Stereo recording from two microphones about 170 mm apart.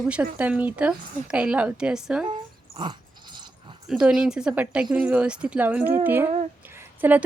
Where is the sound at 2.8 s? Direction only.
25° right (ahead or behind).